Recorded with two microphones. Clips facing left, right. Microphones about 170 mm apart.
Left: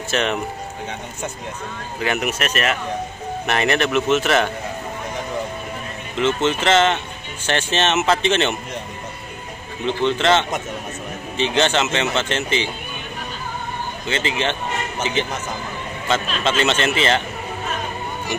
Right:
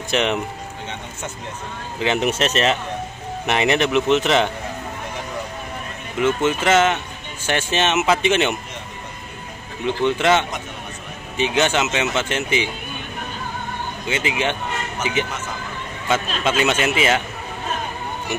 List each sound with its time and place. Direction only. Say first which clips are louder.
0.1 s speech: right 1 dB; 15° right (ahead or behind)
2.0 s speech: right 3 dB; 30° right (ahead or behind)
3.4 s speech: right 1 dB; 20° right (ahead or behind)
6.1 s speech: even; 10° right (ahead or behind)
9.8 s speech: even; 10° right (ahead or behind)
14.0 s speech: even; 10° right (ahead or behind)
16.1 s speech: even; 10° right (ahead or behind)